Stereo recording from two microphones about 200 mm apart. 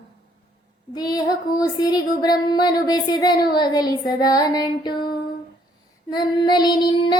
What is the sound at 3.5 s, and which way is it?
Child singing, 20° left (ahead or behind).